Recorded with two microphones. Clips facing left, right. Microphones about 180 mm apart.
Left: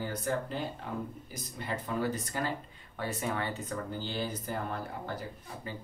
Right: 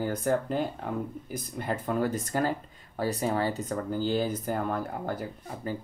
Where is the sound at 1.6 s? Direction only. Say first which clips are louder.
Right 4 dB; 50° right (ahead or behind).